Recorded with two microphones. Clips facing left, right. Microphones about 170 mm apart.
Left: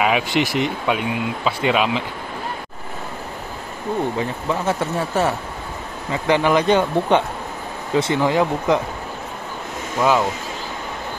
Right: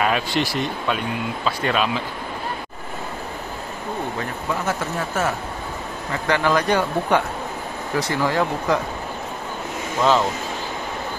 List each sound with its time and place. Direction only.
0.0 s speech: 15° left (ahead or behind)
4.6 s speech: 30° left (ahead or behind)
6.2 s speech: 20° left (ahead or behind)